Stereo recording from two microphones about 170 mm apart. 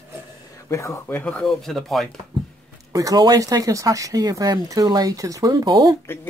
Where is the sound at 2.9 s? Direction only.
20° right (ahead or behind).